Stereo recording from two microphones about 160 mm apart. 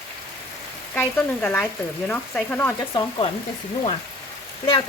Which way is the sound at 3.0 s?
30° left (ahead or behind).